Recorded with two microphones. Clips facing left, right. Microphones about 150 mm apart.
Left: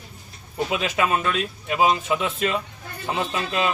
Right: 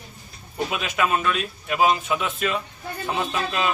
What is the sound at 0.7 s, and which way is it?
A man's voice, 30° left (ahead or behind).